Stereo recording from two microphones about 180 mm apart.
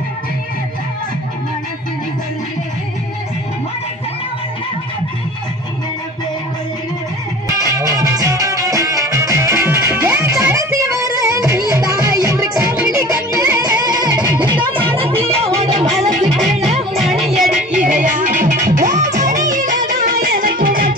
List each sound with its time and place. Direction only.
7.4 s music: 20° right (ahead or behind); by 17.0 s 35° right (ahead or behind)
17.7 s music: 45° right (ahead or behind)